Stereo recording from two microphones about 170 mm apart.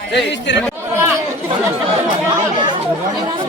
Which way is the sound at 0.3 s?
90° left.